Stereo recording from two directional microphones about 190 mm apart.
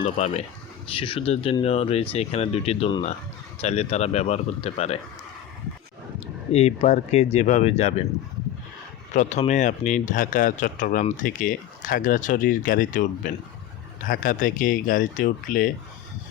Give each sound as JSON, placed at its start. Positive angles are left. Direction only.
{"t": 0.0, "sound": "speech", "side_deg": 35}
{"t": 6.5, "sound": "speech", "side_deg": 35}
{"t": 9.1, "sound": "speech", "side_deg": 35}